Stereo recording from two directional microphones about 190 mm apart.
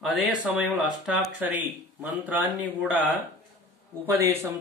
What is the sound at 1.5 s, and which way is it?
Speech, 10° right (ahead or behind).